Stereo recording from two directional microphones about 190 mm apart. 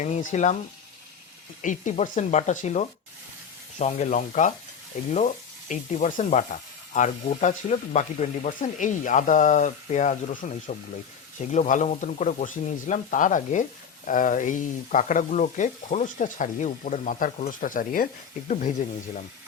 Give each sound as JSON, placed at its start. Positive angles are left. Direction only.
{"t": 0.0, "sound": "speech", "side_deg": 40}
{"t": 1.6, "sound": "speech", "side_deg": 40}